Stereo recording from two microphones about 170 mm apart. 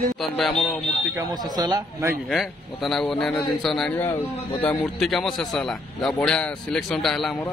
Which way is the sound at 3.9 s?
15° left (ahead or behind).